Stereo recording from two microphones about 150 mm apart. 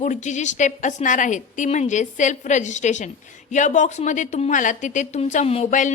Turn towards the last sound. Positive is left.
turn(degrees=55)  # may be behind; listen again after turning